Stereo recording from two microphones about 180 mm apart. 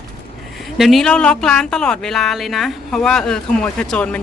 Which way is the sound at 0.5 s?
Centre (ahead or behind).